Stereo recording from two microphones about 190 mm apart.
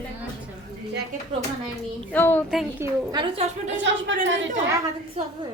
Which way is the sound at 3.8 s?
75° right (ahead or behind).